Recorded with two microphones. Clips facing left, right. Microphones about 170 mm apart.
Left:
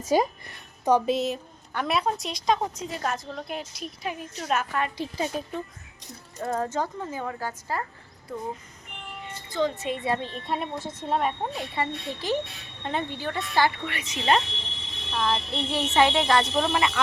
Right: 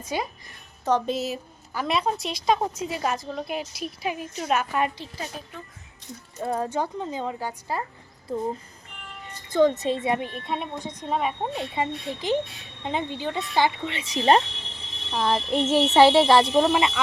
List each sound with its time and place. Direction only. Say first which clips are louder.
0.1 s a woman's voice: left 7 dB; 40° left (ahead or behind)
0.9 s speech: left 2 dB; 10° left (ahead or behind)
1.1 s a woman's voice: left 2 dB; 5° right (ahead or behind)
4.9 s a woman's voice: left 7 dB; 20° left (ahead or behind)
6.3 s speech: right 1 dB; 10° right (ahead or behind)
8.3 s speech: right 6 dB; 30° right (ahead or behind)
9.5 s speech: right 7 dB; 50° right (ahead or behind)
10.0 s speech: right 2 dB; 20° right (ahead or behind)
10.4 s a woman's voice: even; centre (ahead or behind)
11.5 s speech: right 2 dB; 20° right (ahead or behind)
15.6 s speech: right 6 dB; 40° right (ahead or behind)
16.6 s speech: right 4 dB; 15° right (ahead or behind)